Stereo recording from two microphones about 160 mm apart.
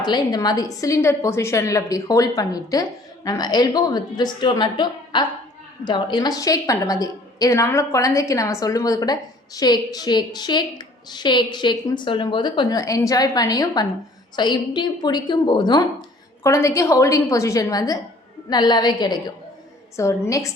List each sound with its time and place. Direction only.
0.0 s a woman's voice: 25° left (ahead or behind)